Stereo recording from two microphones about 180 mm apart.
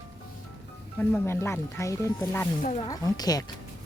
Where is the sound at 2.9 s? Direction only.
20° left (ahead or behind).